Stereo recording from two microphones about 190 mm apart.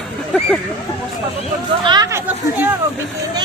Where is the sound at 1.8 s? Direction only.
20° right (ahead or behind).